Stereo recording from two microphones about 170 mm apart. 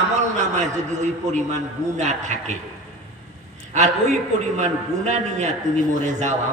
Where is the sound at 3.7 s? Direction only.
45° right (ahead or behind).